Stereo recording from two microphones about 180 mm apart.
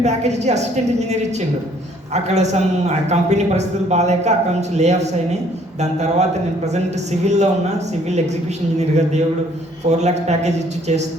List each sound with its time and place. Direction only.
0.0 s speech: 40° right (ahead or behind)
8.8 s speech: 40° right (ahead or behind)